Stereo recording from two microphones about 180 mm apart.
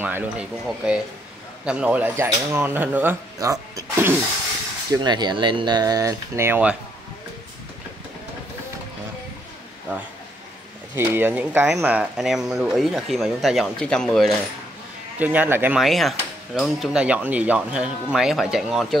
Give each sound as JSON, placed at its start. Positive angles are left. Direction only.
{"t": 0.0, "sound": "speech", "side_deg": -10}
{"t": 11.0, "sound": "speech", "side_deg": -10}
{"t": 15.1, "sound": "speech", "side_deg": -10}